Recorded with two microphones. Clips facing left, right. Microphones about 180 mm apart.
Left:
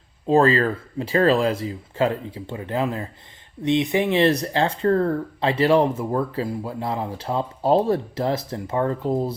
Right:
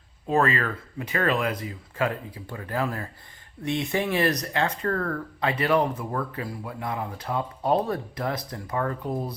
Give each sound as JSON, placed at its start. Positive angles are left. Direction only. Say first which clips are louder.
{"t": 0.3, "sound": "speech", "louder": "left 6 dB", "side_deg": 30}